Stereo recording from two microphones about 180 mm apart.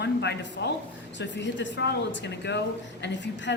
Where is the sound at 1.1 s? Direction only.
85° left.